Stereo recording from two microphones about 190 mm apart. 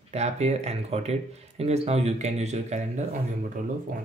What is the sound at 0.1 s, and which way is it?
Speech, 35° right (ahead or behind).